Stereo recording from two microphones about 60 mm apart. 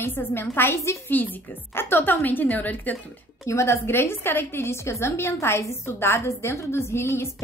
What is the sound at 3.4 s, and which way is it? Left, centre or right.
A woman's voice, left.